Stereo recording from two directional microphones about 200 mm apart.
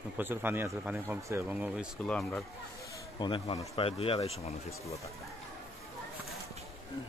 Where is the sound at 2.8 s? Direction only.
20° left (ahead or behind).